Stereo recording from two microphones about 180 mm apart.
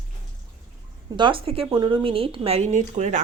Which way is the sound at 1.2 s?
25° right (ahead or behind).